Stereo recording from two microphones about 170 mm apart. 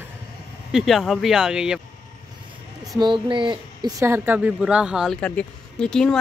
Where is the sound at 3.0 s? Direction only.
30° right (ahead or behind).